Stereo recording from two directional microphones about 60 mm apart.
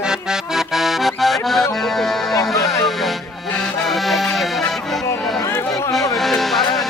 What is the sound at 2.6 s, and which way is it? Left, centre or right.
Music, left.